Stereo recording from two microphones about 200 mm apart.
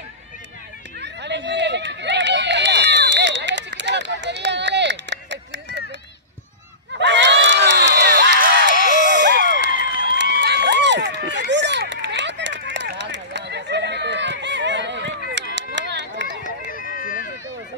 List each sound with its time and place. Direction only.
1.0 s run: 60° right (ahead or behind)
7.0 s crowd: 60° right (ahead or behind)
9.0 s a sound: 60° right (ahead or behind)
9.7 s a sound: 45° left (ahead or behind)
10.4 s run: 60° right (ahead or behind)
16.7 s run: 45° left (ahead or behind)